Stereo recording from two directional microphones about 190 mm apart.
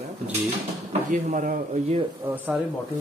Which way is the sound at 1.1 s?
40° right (ahead or behind).